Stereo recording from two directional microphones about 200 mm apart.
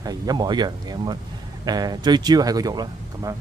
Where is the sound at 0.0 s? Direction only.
20° right (ahead or behind).